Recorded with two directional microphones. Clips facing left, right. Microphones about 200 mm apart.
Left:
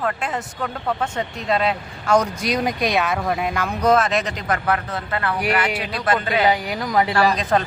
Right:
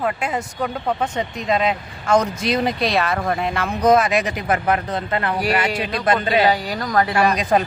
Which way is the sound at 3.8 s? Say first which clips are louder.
Right 2 dB; 10° right (ahead or behind).